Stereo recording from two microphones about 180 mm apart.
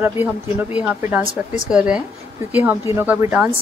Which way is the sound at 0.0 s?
10° right (ahead or behind).